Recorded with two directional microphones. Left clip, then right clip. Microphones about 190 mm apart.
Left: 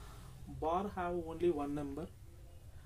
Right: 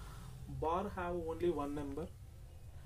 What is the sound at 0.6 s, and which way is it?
Speech, 15° left (ahead or behind).